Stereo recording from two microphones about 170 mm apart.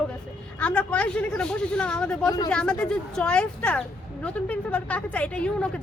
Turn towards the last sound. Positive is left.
turn(degrees=5)  # may be behind; listen again after turning